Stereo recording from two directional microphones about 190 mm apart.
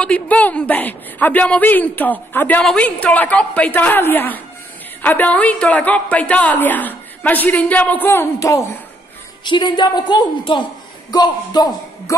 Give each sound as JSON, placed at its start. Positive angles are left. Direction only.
{"t": 0.0, "sound": "a woman's voice", "side_deg": 5}